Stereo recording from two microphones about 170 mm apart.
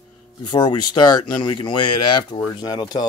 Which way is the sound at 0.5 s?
25° left (ahead or behind).